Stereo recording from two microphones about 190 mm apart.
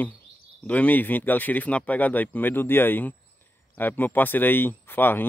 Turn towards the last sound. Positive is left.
turn(degrees=10)  # may be behind; listen again after turning